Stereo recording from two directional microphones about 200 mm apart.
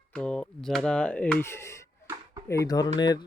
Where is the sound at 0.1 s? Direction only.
5° left (ahead or behind).